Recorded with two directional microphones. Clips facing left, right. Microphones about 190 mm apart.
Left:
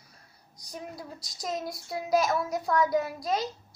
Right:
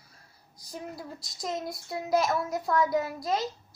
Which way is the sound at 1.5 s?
Centre (ahead or behind).